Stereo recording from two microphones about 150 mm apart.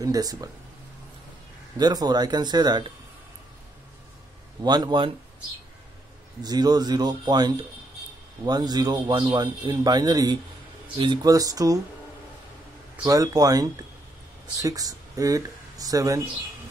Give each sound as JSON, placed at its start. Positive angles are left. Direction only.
{"t": 0.0, "sound": "a man's voice", "side_deg": -25}
{"t": 1.8, "sound": "a man's voice", "side_deg": -25}
{"t": 4.6, "sound": "a man's voice", "side_deg": -30}
{"t": 6.4, "sound": "a man's voice", "side_deg": -25}
{"t": 13.0, "sound": "a man's voice", "side_deg": -25}